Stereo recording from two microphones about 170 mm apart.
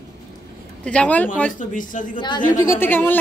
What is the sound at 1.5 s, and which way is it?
Speech, 50° left (ahead or behind).